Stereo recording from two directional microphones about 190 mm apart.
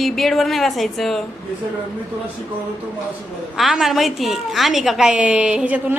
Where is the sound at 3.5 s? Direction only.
Centre (ahead or behind).